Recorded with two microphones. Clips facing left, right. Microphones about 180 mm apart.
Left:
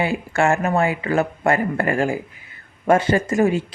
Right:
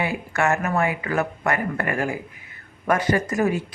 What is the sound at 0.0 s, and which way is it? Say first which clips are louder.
A woman's voice: left 4 dB; 30° left (ahead or behind).